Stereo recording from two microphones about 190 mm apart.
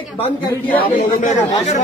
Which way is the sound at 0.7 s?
45° left (ahead or behind).